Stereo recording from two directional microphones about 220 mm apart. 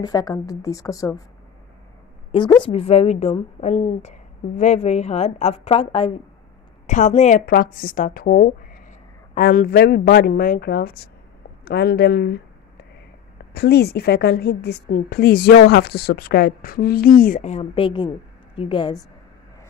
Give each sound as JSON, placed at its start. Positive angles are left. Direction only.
{"t": 0.0, "sound": "a woman's voice", "side_deg": 15}
{"t": 2.3, "sound": "a woman's voice", "side_deg": 20}
{"t": 13.5, "sound": "a woman's voice", "side_deg": 45}